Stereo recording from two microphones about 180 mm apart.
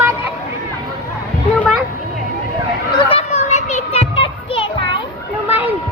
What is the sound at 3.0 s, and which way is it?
Children playing, 35° left (ahead or behind).